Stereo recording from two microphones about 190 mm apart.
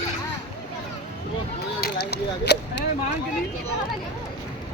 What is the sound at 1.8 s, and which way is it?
Speech, 60° left (ahead or behind).